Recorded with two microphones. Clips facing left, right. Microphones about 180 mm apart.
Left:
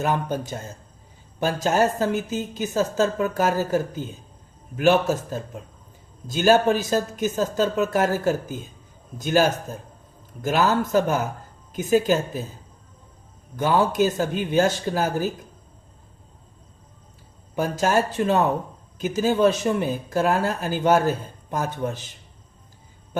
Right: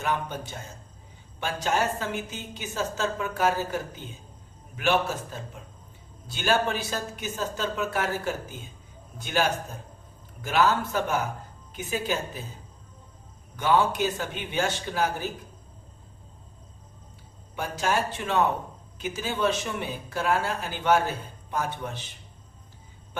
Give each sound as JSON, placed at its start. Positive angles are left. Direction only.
{"t": 0.0, "sound": "speech", "side_deg": 40}
{"t": 13.6, "sound": "speech", "side_deg": 40}
{"t": 17.5, "sound": "speech", "side_deg": 40}